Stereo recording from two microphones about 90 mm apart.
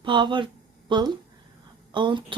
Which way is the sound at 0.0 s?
65° right (ahead or behind).